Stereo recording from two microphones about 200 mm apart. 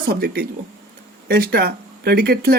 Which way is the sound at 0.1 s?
50° right (ahead or behind).